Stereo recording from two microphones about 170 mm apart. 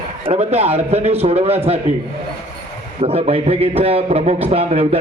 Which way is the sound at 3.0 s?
35° right (ahead or behind).